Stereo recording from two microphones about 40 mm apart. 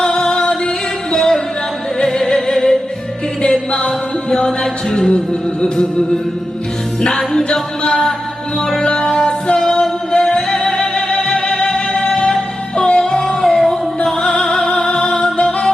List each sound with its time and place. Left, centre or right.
0.0 s music: centre
7.0 s music: centre